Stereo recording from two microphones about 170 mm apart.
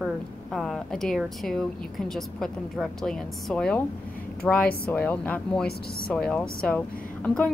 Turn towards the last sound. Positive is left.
turn(degrees=10)  # may be behind; listen again after turning